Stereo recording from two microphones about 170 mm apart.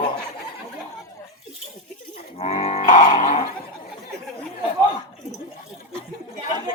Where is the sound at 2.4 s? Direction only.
40° left (ahead or behind).